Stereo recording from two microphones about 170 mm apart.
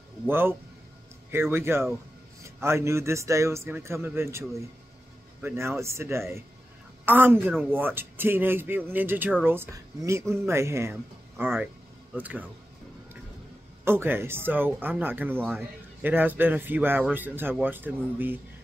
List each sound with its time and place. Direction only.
0.3 s speech: 15° right (ahead or behind)
13.8 s speech: 15° right (ahead or behind)